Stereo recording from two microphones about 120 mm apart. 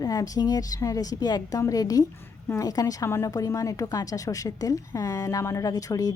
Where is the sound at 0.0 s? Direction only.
30° left (ahead or behind).